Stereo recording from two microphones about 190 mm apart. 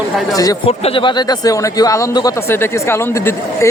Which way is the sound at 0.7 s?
30° left (ahead or behind).